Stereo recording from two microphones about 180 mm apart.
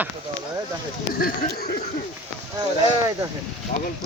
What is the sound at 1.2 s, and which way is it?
Speech, 55° left (ahead or behind).